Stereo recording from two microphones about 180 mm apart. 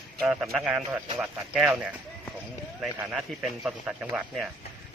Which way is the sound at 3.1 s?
5° right (ahead or behind).